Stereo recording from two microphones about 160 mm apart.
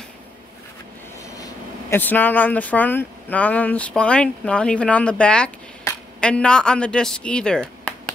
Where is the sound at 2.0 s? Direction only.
10° left (ahead or behind).